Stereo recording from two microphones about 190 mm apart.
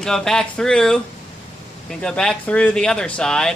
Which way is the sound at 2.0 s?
5° left (ahead or behind).